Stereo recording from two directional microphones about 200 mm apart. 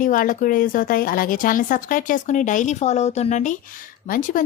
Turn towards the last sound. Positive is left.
turn(degrees=45)  # may be behind; listen again after turning